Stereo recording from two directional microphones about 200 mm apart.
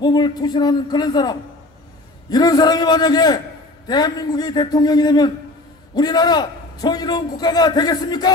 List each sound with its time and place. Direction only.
0.0 s a man's voice: 20° left (ahead or behind)